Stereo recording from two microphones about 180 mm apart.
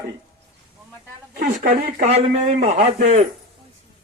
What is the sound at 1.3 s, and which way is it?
Speech, 55° right (ahead or behind).